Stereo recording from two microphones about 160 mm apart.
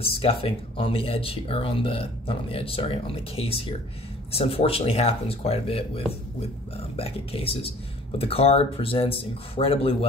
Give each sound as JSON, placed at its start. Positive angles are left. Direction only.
{"t": 0.0, "sound": "speech", "side_deg": 35}